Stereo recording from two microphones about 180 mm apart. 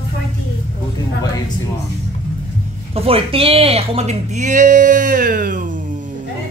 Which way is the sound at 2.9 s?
30° right (ahead or behind).